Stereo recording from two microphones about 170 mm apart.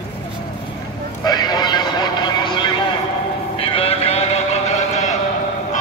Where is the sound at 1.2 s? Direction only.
25° left (ahead or behind).